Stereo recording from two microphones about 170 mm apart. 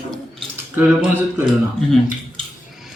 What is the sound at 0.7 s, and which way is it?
Speech, 10° right (ahead or behind).